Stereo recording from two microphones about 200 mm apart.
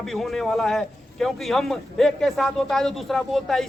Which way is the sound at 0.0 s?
Centre (ahead or behind).